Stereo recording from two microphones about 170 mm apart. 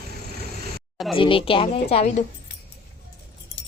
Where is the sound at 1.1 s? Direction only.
30° left (ahead or behind).